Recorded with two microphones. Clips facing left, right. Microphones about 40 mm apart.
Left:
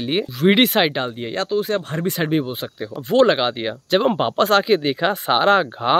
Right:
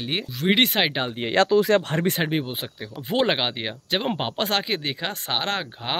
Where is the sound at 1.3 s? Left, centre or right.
Right.